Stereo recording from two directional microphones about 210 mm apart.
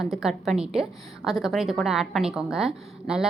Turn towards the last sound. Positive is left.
turn(degrees=-5)  # may be behind; listen again after turning